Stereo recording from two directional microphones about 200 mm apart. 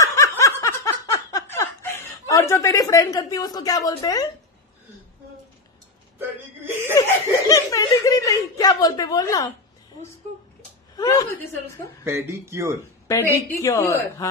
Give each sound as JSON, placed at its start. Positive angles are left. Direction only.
{"t": 0.0, "sound": "snicker", "side_deg": 15}
{"t": 6.1, "sound": "speech", "side_deg": -10}
{"t": 7.0, "sound": "speech", "side_deg": 15}
{"t": 11.0, "sound": "speech", "side_deg": 15}
{"t": 12.0, "sound": "speech", "side_deg": -15}
{"t": 13.6, "sound": "speech", "side_deg": 15}